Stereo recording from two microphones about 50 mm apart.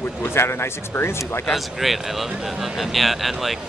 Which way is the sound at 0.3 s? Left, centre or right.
Left.